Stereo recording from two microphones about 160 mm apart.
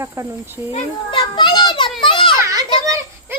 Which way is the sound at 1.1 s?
30° left (ahead or behind).